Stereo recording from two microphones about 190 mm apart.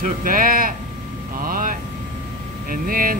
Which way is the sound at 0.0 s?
45° right (ahead or behind).